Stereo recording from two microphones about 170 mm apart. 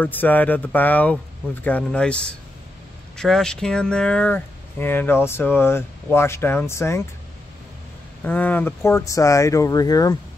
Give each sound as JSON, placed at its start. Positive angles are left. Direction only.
{"t": 0.0, "sound": "speech", "side_deg": 10}
{"t": 8.3, "sound": "speech", "side_deg": 10}